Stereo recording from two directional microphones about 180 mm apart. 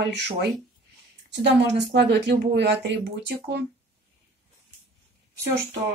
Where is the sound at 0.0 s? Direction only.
70° right (ahead or behind).